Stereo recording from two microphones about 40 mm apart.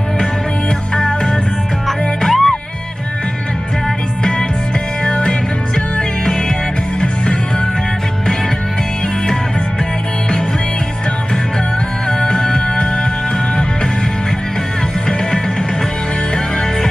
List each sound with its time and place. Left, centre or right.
0.9 s music: left
1.9 s music: centre
5.0 s music: left
12.1 s music: left